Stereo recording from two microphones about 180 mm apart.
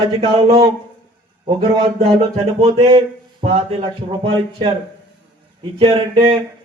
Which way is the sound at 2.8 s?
30° right (ahead or behind).